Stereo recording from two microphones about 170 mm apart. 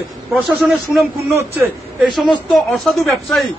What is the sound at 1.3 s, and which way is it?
A man's voice, 10° right (ahead or behind).